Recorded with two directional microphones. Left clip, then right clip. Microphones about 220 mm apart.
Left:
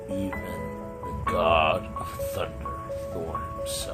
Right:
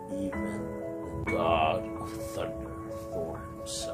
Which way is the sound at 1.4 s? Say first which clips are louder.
Left 5 dB; 35° left (ahead or behind).